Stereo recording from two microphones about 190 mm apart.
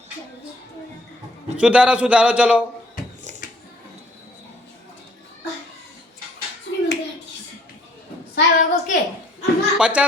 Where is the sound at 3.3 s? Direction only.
40° right (ahead or behind).